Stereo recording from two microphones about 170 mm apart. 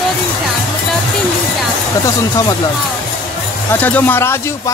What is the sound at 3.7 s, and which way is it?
Speech, 10° left (ahead or behind).